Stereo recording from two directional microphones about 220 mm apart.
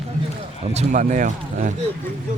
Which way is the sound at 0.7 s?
35° right (ahead or behind).